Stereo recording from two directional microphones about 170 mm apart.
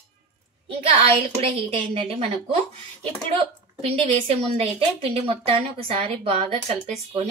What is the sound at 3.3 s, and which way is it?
A woman's voice, 35° right (ahead or behind).